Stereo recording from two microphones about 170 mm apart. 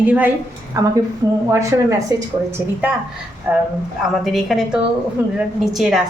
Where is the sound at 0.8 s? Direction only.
20° right (ahead or behind).